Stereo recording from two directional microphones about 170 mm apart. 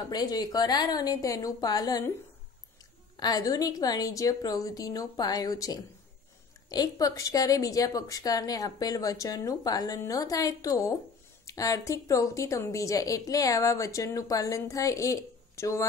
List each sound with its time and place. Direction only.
0.1 s a woman's voice: 25° left (ahead or behind)
3.2 s a woman's voice: 20° left (ahead or behind)